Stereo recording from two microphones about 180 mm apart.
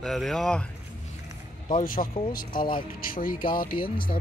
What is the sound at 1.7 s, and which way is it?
Speech, 50° left (ahead or behind).